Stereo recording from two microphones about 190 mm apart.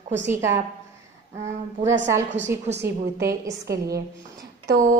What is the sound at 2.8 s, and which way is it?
Speech, 55° right (ahead or behind).